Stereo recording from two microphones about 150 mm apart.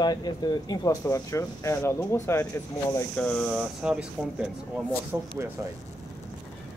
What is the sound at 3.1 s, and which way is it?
Speech, 10° left (ahead or behind).